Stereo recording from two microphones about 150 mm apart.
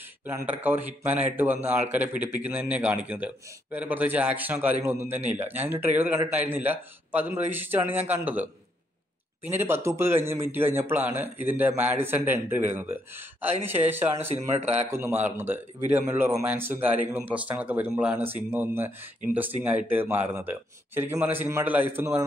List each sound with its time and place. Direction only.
0.3 s a man's voice: 10° right (ahead or behind)
9.5 s a man's voice: 15° right (ahead or behind)